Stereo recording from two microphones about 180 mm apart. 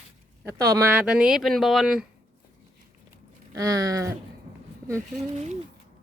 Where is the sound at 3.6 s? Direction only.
20° right (ahead or behind).